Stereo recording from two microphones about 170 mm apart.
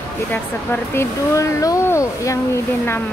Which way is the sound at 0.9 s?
15° left (ahead or behind).